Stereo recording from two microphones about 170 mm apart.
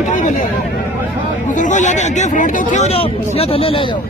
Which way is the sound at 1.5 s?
45° left (ahead or behind).